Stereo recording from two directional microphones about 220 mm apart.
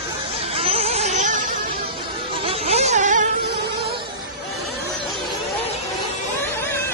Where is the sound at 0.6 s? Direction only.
25° right (ahead or behind).